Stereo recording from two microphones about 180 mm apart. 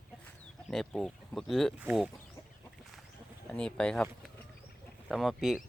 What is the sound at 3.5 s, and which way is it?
Chicken, 5° left (ahead or behind).